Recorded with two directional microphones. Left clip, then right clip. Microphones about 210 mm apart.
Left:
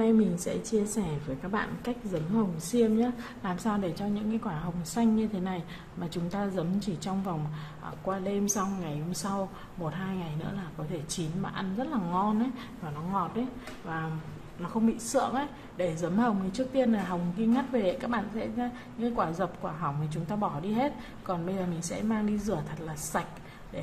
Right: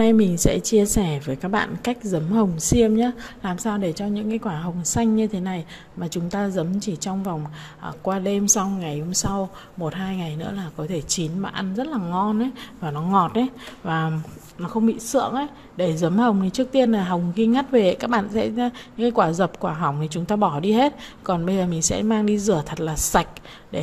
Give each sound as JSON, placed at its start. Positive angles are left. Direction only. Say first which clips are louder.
{"t": 0.0, "sound": "a woman's voice", "louder": "right 8 dB", "side_deg": -40}
{"t": 13.1, "sound": "speech", "louder": "right 12 dB", "side_deg": -60}
{"t": 14.6, "sound": "a woman's voice", "louder": "right 7 dB", "side_deg": -35}